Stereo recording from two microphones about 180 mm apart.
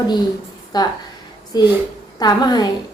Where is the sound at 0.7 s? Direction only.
20° left (ahead or behind).